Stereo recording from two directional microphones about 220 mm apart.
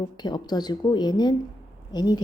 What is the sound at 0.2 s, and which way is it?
A woman's voice, 20° left (ahead or behind).